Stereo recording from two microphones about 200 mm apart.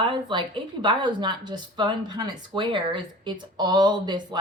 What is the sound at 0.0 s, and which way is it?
Speech, 25° right (ahead or behind).